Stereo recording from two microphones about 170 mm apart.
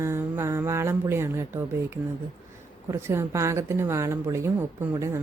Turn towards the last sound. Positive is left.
turn(degrees=-15)  # may be behind; listen again after turning